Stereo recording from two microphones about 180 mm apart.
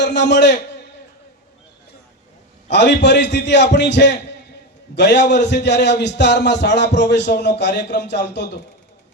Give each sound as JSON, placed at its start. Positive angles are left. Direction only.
{"t": 0.0, "sound": "a man's voice", "side_deg": 75}
{"t": 2.6, "sound": "a man's voice", "side_deg": 75}